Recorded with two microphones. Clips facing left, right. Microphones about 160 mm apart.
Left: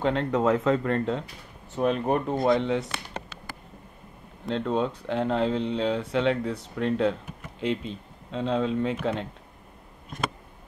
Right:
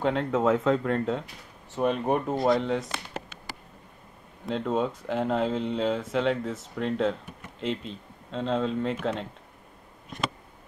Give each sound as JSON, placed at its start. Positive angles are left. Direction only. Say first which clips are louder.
{"t": 0.0, "sound": "speech", "louder": "left 1 dB", "side_deg": 0}
{"t": 4.5, "sound": "speech", "louder": "left 1 dB", "side_deg": -5}